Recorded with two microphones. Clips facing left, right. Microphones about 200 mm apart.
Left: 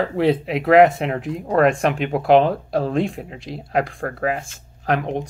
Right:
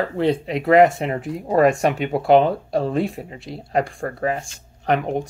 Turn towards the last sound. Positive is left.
turn(degrees=0)  # may be behind; listen again after turning